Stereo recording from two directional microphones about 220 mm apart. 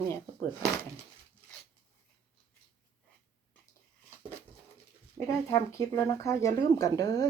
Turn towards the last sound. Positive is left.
turn(degrees=15)  # may be behind; listen again after turning